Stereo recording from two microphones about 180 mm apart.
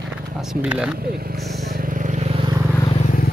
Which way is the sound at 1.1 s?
55° right (ahead or behind).